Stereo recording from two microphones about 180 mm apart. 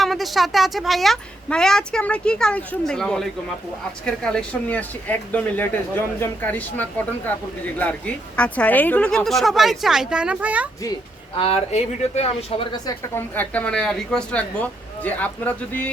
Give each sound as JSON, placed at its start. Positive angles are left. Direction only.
{"t": 0.0, "sound": "a woman's voice", "side_deg": 0}
{"t": 11.3, "sound": "speech", "side_deg": 35}
{"t": 13.3, "sound": "speech", "side_deg": 10}